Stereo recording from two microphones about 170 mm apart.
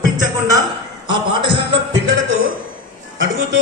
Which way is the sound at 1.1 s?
30° right (ahead or behind).